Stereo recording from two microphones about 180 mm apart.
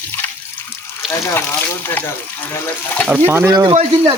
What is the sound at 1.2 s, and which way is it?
Speech, 15° left (ahead or behind).